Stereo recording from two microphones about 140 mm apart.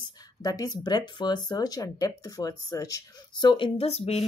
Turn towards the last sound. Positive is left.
turn(degrees=50)  # may be behind; listen again after turning